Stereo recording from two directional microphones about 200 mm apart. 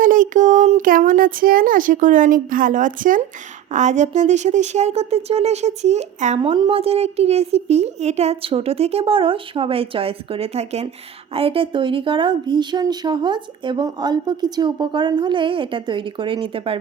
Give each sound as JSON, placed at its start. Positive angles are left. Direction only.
{"t": 0.0, "sound": "speech", "side_deg": -40}